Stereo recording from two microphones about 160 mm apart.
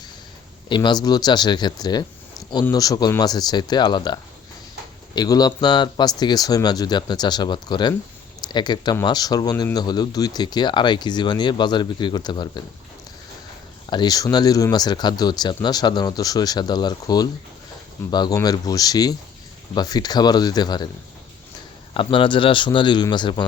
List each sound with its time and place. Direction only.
0.7 s speech: 25° left (ahead or behind)
13.9 s speech: 25° left (ahead or behind)
21.9 s speech: 30° left (ahead or behind)